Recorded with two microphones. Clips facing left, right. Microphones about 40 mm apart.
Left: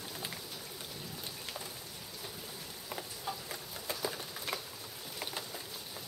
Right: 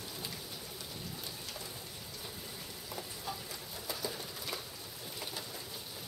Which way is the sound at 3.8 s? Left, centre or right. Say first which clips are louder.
Left 2 dB; left.